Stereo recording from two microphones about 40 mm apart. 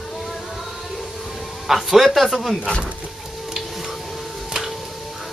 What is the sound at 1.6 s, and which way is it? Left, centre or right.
Speech, centre.